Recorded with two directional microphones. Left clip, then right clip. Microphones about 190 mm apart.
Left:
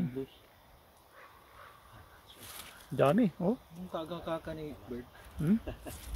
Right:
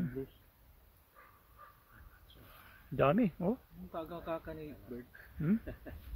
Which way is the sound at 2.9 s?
Centre (ahead or behind).